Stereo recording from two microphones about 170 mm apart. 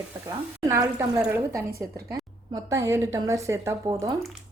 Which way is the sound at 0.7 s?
15° right (ahead or behind).